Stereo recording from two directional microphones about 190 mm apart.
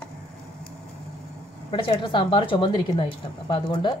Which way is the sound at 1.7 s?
25° left (ahead or behind).